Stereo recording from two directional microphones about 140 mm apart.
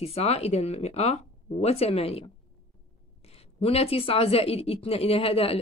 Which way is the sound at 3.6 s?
45° left (ahead or behind).